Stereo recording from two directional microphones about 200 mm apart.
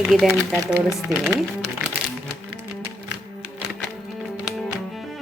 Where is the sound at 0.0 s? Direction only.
Centre (ahead or behind).